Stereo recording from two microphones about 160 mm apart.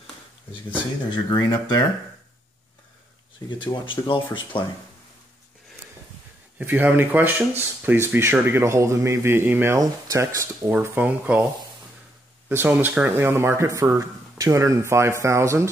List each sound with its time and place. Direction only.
0.7 s speech: 25° left (ahead or behind)
3.4 s speech: 30° left (ahead or behind)
6.6 s speech: 10° right (ahead or behind)
12.4 s speech: 15° right (ahead or behind)